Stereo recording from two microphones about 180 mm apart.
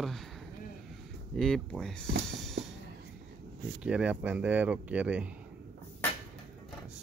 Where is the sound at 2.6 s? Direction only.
70° right (ahead or behind).